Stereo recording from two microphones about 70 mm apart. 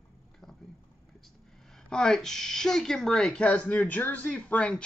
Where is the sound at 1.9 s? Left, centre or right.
Centre.